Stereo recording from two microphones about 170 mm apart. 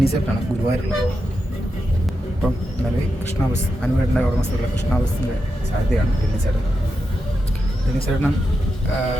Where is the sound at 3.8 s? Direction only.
5° left (ahead or behind).